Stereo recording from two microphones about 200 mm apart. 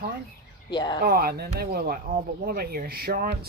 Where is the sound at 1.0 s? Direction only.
50° right (ahead or behind).